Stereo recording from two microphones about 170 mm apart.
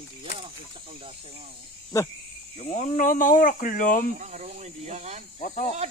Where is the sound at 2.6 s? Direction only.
45° left (ahead or behind).